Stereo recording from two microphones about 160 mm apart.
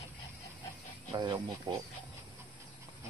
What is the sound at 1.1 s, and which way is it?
Speech, 30° right (ahead or behind).